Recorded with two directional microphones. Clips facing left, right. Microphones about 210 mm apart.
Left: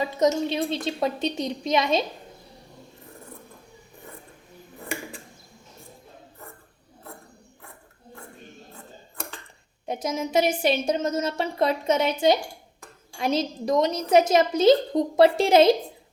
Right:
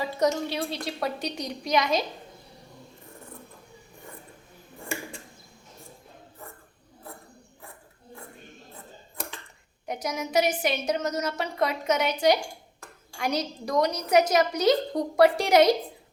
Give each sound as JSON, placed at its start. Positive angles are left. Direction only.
{"t": 0.0, "sound": "a woman's voice", "side_deg": 20}
{"t": 9.8, "sound": "a woman's voice", "side_deg": 25}